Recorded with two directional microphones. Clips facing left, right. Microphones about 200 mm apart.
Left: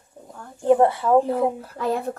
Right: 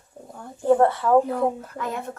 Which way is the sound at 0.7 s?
15° left (ahead or behind).